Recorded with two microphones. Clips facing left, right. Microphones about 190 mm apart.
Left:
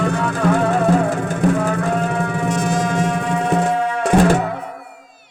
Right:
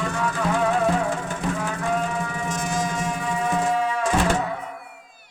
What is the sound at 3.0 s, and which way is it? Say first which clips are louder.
Music: left 6 dB; 75° left (ahead or behind).